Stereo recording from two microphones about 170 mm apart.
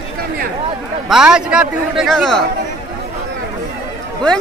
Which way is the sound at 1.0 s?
5° right (ahead or behind).